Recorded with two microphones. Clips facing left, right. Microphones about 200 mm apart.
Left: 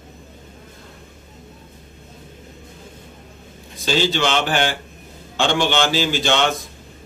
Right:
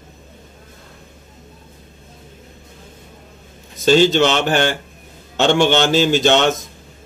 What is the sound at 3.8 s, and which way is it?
A man's voice, 50° right (ahead or behind).